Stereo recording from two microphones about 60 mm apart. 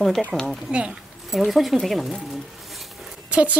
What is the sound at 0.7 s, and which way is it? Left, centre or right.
Speech, centre.